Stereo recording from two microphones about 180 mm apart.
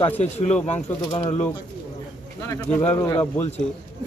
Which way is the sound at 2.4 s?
15° left (ahead or behind).